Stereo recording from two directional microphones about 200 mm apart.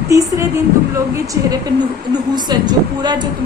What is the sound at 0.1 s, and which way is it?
A woman's voice, 15° right (ahead or behind).